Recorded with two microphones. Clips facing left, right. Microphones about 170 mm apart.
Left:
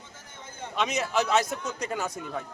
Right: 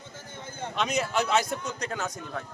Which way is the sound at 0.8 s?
Centre (ahead or behind).